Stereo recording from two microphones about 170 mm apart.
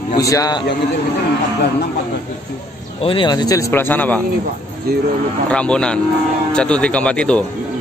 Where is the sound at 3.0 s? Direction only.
30° left (ahead or behind); by 4.2 s 10° left (ahead or behind).